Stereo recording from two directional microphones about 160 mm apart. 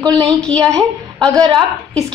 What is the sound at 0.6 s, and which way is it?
A woman's voice, 20° right (ahead or behind).